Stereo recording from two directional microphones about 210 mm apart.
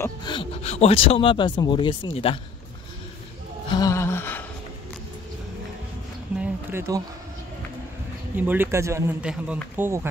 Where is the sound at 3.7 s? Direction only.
15° left (ahead or behind).